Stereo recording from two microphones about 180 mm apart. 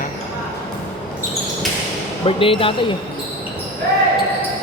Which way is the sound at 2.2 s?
30° left (ahead or behind).